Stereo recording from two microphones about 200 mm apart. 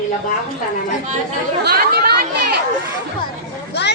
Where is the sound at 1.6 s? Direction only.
50° right (ahead or behind).